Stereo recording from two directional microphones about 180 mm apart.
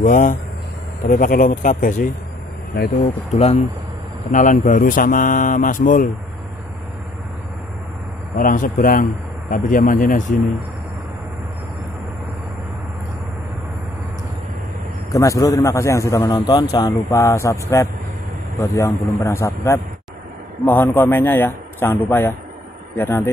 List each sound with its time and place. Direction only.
0.0 s speech: 50° left (ahead or behind)
3.3 s speech: 35° left (ahead or behind)
8.4 s speech: 50° left (ahead or behind)
15.1 s a man's voice: 15° left (ahead or behind)